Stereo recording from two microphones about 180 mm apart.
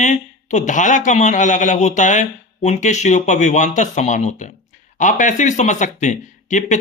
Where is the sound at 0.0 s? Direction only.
40° left (ahead or behind).